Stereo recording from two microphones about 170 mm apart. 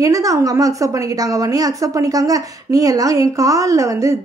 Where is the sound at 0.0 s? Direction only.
20° right (ahead or behind).